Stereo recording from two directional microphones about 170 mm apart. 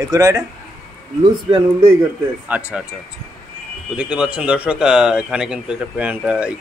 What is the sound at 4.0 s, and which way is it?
Speech, 5° right (ahead or behind).